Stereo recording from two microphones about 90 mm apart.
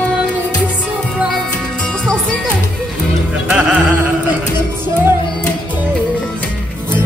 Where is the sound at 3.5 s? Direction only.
15° right (ahead or behind).